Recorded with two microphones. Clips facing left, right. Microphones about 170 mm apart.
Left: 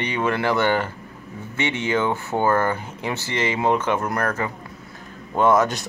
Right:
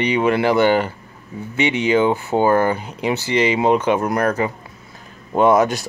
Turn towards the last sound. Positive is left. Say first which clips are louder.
# right 3 dB
turn(degrees=-10)  # may be behind; listen again after turning